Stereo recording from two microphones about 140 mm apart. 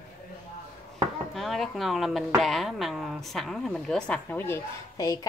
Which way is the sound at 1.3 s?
Centre (ahead or behind).